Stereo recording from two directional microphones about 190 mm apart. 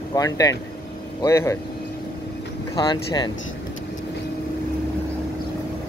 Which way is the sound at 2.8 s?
25° left (ahead or behind).